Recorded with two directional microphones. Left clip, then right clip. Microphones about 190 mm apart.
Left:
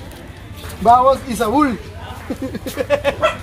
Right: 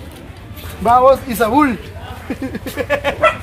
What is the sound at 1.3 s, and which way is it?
Speech, 15° right (ahead or behind).